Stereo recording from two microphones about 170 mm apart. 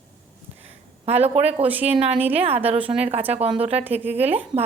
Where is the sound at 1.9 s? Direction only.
35° right (ahead or behind).